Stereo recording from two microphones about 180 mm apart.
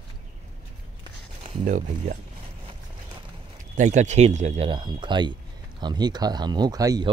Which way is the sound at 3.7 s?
40° right (ahead or behind).